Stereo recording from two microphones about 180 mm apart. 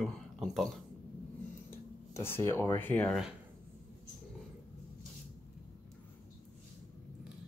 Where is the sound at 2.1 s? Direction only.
15° left (ahead or behind).